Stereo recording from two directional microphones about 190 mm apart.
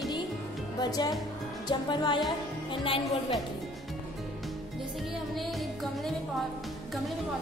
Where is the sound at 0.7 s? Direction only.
20° left (ahead or behind).